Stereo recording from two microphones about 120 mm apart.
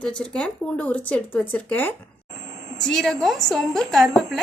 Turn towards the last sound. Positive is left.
turn(degrees=0)  # may be behind; listen again after turning